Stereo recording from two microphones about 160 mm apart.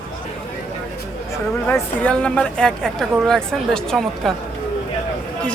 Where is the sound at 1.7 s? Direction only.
10° left (ahead or behind).